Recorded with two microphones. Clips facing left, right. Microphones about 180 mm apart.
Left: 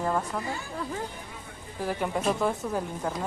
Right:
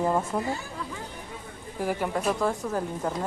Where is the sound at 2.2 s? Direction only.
Centre (ahead or behind).